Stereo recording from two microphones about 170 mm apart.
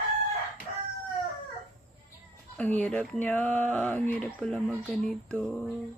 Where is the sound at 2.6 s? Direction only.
5° left (ahead or behind).